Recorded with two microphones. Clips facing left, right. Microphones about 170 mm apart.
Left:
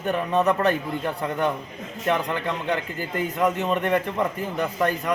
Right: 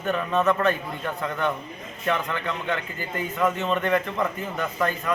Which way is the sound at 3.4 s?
15° left (ahead or behind).